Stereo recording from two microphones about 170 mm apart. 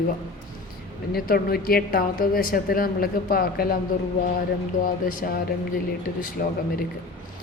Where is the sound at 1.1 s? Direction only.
60° left (ahead or behind).